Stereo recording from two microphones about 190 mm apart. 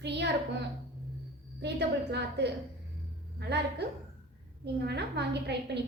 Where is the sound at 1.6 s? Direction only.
65° right (ahead or behind).